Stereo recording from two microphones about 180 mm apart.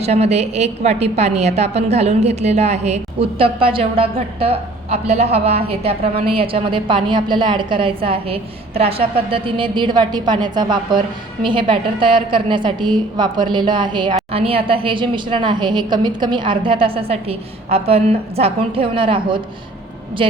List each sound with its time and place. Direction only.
0.0 s a woman's voice: 35° right (ahead or behind)